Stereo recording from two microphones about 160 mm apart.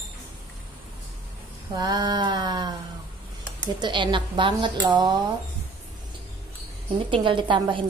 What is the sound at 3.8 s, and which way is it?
A woman's voice, 30° right (ahead or behind).